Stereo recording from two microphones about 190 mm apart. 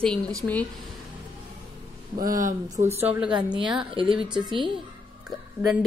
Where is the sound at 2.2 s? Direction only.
45° right (ahead or behind).